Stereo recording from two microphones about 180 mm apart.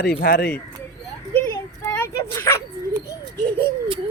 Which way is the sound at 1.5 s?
15° left (ahead or behind).